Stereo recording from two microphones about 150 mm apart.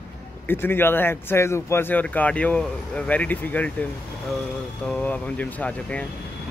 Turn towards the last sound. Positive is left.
turn(degrees=10)  # may be behind; listen again after turning